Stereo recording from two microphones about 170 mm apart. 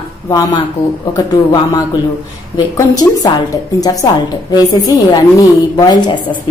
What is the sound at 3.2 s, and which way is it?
A woman's voice, 20° left (ahead or behind).